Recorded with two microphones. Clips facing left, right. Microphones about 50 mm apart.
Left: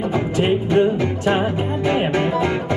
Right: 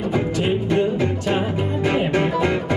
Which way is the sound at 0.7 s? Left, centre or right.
Left.